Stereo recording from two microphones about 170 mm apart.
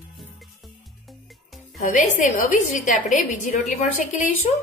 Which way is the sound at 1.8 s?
50° left (ahead or behind).